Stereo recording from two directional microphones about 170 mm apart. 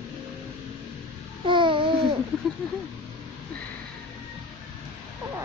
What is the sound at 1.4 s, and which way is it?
Babbling, 30° right (ahead or behind).